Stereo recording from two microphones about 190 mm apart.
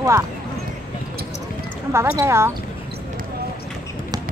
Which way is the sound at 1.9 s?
15° right (ahead or behind).